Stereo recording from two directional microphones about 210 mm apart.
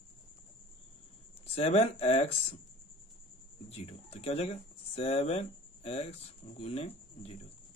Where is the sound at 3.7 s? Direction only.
30° left (ahead or behind).